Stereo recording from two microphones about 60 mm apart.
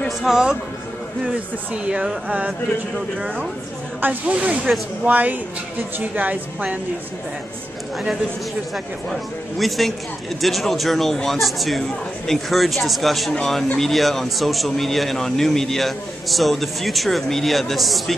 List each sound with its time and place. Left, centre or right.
0.3 s speech: centre
1.7 s a woman's voice: right
4.0 s a woman's voice: right
9.6 s a man's voice: centre